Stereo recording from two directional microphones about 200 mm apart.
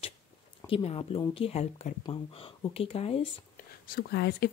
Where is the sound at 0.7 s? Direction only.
25° left (ahead or behind).